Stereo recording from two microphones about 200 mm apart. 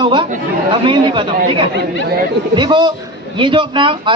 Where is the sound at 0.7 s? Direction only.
25° right (ahead or behind).